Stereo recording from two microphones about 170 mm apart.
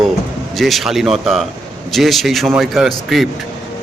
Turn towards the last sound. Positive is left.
turn(degrees=0)  # may be behind; listen again after turning